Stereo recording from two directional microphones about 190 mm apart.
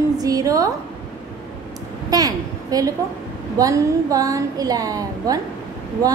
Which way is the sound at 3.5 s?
15° right (ahead or behind).